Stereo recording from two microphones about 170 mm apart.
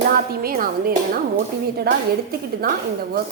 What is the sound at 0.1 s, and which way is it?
A woman's voice, 60° right (ahead or behind).